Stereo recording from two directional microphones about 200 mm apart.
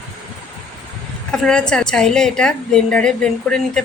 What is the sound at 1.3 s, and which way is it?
A woman's voice, 5° left (ahead or behind).